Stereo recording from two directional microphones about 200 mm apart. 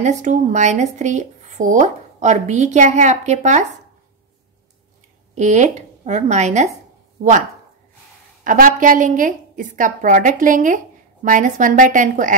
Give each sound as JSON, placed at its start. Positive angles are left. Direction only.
{"t": 0.0, "sound": "speech", "side_deg": -35}
{"t": 5.3, "sound": "speech", "side_deg": -35}
{"t": 8.5, "sound": "speech", "side_deg": -40}